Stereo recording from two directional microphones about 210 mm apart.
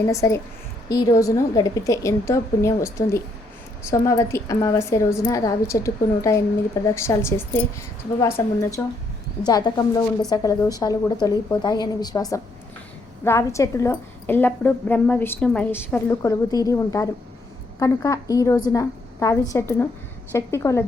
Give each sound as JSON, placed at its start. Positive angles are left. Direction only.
{"t": 0.1, "sound": "a woman's voice", "side_deg": 15}